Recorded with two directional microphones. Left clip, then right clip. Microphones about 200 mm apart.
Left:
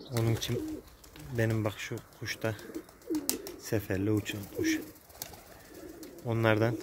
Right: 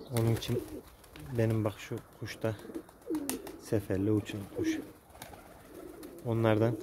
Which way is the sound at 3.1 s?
20° left (ahead or behind).